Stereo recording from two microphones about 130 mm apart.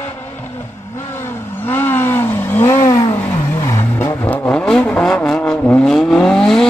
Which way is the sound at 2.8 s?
30° left (ahead or behind).